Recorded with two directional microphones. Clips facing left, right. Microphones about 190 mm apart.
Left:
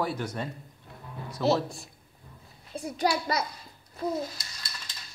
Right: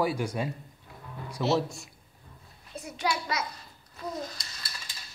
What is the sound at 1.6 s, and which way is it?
A child's voice, 35° left (ahead or behind).